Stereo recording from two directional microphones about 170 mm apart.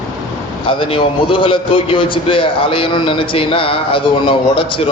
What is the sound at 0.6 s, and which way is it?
A man's voice, 30° left (ahead or behind).